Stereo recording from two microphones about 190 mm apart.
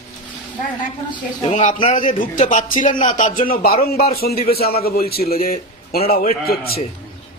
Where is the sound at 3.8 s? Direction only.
55° left (ahead or behind).